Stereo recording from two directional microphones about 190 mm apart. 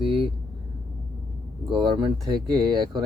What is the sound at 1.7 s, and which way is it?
Speech, 25° right (ahead or behind).